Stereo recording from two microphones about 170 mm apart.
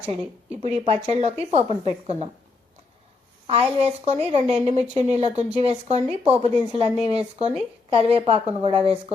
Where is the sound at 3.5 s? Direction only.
35° right (ahead or behind).